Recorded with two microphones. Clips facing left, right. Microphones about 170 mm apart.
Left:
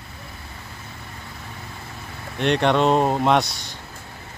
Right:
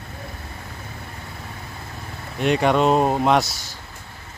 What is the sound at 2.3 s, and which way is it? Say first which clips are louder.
Speech: right 1 dB; 5° right (ahead or behind).